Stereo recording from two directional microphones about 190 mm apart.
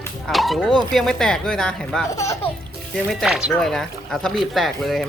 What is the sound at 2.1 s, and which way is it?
Speech, 15° left (ahead or behind).